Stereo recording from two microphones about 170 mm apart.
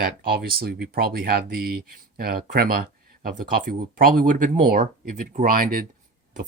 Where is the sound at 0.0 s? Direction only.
60° right (ahead or behind).